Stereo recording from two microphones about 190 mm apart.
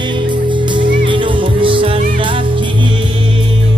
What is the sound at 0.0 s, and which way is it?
Music, 25° right (ahead or behind).